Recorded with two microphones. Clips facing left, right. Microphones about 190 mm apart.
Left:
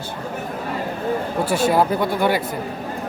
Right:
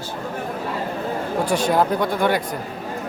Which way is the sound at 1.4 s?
5° left (ahead or behind).